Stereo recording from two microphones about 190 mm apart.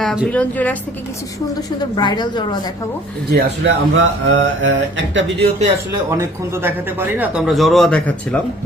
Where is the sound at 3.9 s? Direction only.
80° right.